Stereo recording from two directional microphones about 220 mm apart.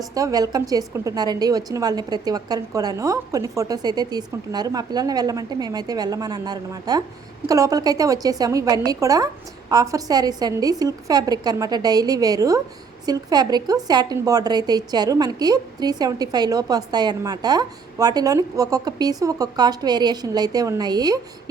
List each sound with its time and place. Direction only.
0.1 s speech: 15° right (ahead or behind)